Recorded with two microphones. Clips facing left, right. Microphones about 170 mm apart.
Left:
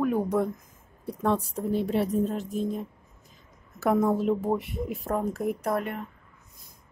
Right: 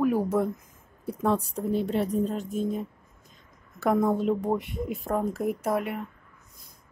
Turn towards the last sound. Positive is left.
turn(degrees=-5)  # may be behind; listen again after turning